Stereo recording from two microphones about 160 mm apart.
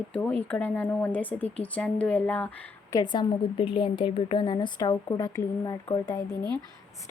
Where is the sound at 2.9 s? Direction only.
25° left (ahead or behind).